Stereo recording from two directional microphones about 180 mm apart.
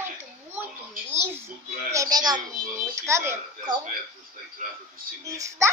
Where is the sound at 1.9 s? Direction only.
20° right (ahead or behind).